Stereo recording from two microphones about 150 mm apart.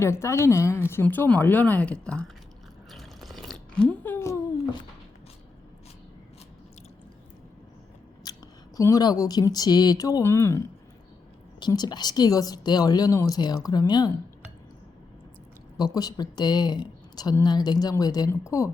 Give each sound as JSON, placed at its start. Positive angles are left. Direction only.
{"t": 0.0, "sound": "speech", "side_deg": 20}
{"t": 2.9, "sound": "a sound", "side_deg": 0}
{"t": 8.2, "sound": "speech", "side_deg": 25}
{"t": 11.6, "sound": "a woman's voice", "side_deg": 25}
{"t": 15.8, "sound": "a woman's voice", "side_deg": 25}